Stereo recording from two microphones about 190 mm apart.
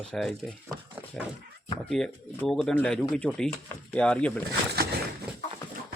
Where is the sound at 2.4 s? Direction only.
5° left (ahead or behind).